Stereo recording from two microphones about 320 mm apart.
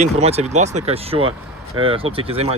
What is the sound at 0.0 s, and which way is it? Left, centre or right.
Speech, centre.